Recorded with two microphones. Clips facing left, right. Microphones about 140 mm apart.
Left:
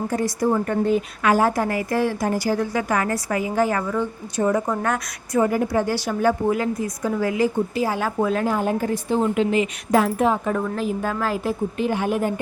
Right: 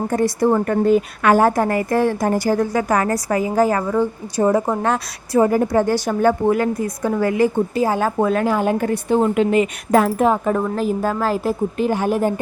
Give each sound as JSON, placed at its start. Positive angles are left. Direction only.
{"t": 0.1, "sound": "a woman's voice", "side_deg": -60}
{"t": 7.8, "sound": "a woman's voice", "side_deg": -45}
{"t": 8.4, "sound": "a woman's voice", "side_deg": -85}